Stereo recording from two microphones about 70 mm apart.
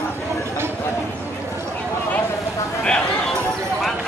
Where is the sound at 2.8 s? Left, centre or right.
Centre.